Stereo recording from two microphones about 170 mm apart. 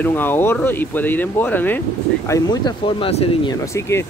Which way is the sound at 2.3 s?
25° left (ahead or behind).